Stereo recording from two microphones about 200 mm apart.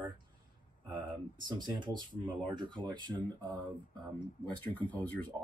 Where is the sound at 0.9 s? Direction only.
25° right (ahead or behind).